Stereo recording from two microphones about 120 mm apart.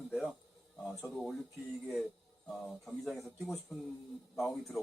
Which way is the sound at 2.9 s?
Centre (ahead or behind).